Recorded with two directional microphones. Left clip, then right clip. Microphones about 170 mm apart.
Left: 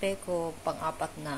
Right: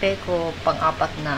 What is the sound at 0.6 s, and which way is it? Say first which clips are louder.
Speech: right 12 dB; 30° left (ahead or behind).